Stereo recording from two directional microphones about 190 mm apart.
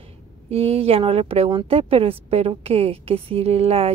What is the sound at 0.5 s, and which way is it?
Speech, 30° right (ahead or behind).